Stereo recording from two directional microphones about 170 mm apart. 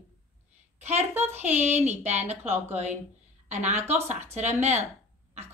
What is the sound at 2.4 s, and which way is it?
Speech, 10° right (ahead or behind).